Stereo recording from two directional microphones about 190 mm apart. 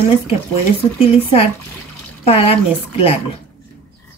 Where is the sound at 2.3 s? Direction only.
30° left (ahead or behind).